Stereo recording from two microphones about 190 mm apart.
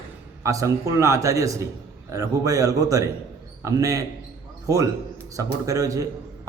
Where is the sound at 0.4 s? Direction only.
15° right (ahead or behind).